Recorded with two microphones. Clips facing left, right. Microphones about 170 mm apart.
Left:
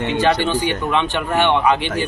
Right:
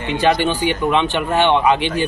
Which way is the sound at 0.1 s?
15° right (ahead or behind).